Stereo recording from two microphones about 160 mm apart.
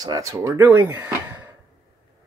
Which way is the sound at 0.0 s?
20° right (ahead or behind).